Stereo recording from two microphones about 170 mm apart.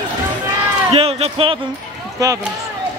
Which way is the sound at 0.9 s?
35° right (ahead or behind).